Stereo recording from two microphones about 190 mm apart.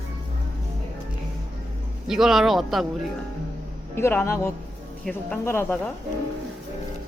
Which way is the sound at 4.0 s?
15° left (ahead or behind).